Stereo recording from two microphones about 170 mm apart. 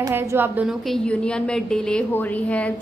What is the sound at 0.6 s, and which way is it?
A woman's voice, centre (ahead or behind).